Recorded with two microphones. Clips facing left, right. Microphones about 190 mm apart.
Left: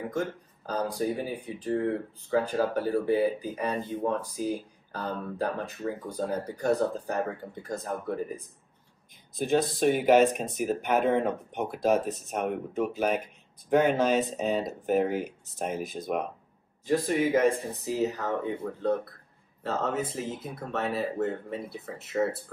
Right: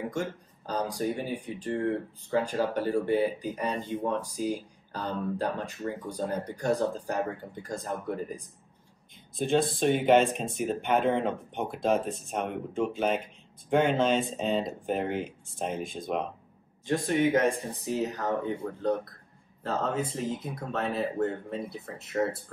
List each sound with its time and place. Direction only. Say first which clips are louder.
0.8 s speech: left 3 dB; centre (ahead or behind)
9.8 s speech: left 2 dB; 5° left (ahead or behind)
10.3 s speech: even; 25° right (ahead or behind)
10.6 s speech: left 1 dB; 5° left (ahead or behind)